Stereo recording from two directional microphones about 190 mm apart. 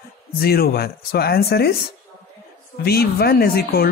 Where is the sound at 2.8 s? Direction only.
55° left (ahead or behind).